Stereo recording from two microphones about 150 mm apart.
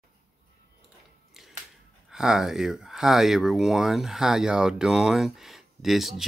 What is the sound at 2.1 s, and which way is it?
Speech, 5° right (ahead or behind).